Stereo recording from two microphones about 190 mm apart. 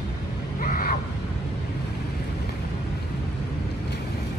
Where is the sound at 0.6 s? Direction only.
50° left (ahead or behind).